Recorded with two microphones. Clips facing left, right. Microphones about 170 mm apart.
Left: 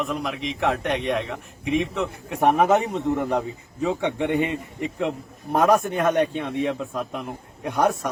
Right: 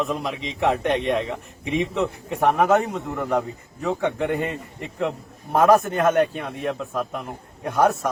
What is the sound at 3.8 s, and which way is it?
Speech, centre (ahead or behind).